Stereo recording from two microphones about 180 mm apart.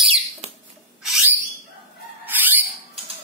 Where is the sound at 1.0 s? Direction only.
5° right (ahead or behind).